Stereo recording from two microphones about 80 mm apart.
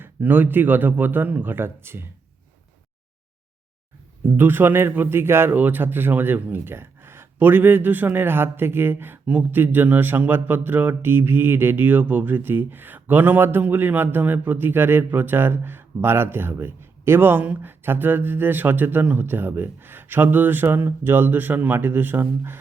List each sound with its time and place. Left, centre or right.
0.0 s a man's voice: right
4.4 s a man's voice: right